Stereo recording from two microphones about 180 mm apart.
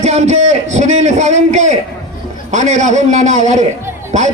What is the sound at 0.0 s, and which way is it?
A man's voice, 40° right (ahead or behind).